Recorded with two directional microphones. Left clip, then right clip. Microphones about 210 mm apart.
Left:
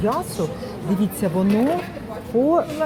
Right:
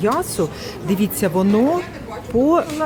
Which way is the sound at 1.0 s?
25° right (ahead or behind).